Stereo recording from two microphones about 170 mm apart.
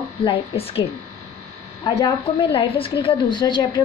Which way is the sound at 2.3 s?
30° left (ahead or behind).